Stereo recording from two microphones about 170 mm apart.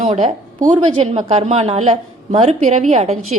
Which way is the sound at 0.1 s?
35° right (ahead or behind).